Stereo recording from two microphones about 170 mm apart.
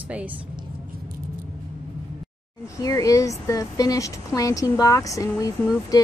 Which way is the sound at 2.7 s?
20° left (ahead or behind).